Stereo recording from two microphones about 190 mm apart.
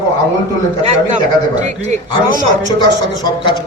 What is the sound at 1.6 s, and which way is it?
Speech, 35° right (ahead or behind).